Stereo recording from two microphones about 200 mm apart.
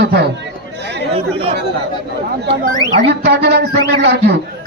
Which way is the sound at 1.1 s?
30° right (ahead or behind).